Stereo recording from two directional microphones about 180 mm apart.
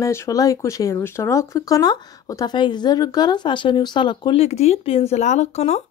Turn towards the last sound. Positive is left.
turn(degrees=35)  # may be behind; listen again after turning